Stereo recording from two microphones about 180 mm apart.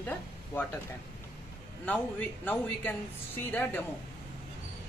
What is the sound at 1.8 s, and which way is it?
A man's voice, 10° left (ahead or behind).